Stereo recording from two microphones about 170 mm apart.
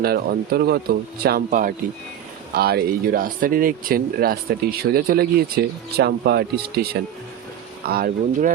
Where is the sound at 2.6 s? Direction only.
65° right (ahead or behind).